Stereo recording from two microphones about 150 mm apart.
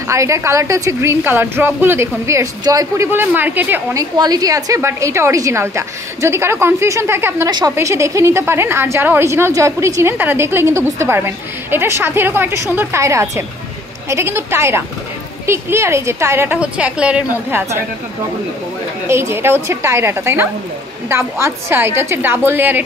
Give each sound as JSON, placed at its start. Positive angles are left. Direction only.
{"t": 0.1, "sound": "a woman's voice", "side_deg": -20}
{"t": 3.9, "sound": "a woman's voice", "side_deg": -25}
{"t": 19.0, "sound": "a woman's voice", "side_deg": -15}